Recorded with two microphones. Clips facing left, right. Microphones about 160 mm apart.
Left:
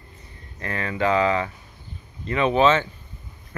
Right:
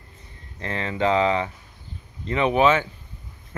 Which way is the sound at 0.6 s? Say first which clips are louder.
Even; 25° right (ahead or behind).